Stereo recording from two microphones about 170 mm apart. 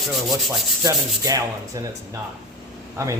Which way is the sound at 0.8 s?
20° right (ahead or behind).